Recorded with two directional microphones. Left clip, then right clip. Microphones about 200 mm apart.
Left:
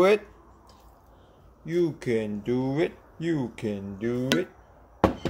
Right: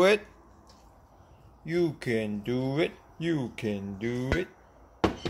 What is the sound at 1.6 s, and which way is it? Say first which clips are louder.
Speech: left 2 dB; 15° right (ahead or behind).